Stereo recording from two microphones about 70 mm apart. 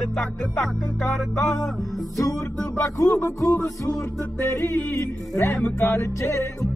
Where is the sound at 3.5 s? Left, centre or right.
Left.